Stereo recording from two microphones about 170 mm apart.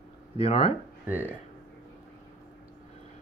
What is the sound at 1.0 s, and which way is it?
Speech, 10° right (ahead or behind).